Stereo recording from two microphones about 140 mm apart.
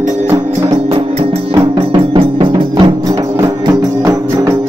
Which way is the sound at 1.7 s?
40° right (ahead or behind).